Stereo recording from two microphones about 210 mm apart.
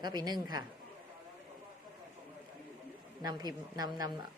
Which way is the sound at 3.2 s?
20° right (ahead or behind).